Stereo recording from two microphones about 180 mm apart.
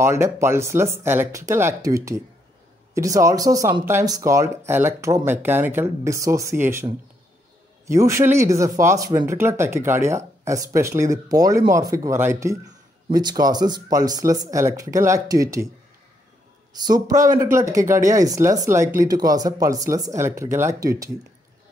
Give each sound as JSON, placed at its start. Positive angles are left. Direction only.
{"t": 0.0, "sound": "speech", "side_deg": -15}
{"t": 16.8, "sound": "speech", "side_deg": -20}